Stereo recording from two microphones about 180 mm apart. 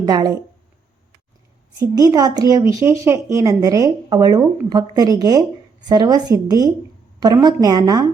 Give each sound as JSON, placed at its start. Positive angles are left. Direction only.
{"t": 0.0, "sound": "speech", "side_deg": -20}
{"t": 1.8, "sound": "speech", "side_deg": -20}